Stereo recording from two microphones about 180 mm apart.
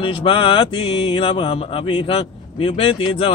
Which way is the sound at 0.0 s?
30° left (ahead or behind).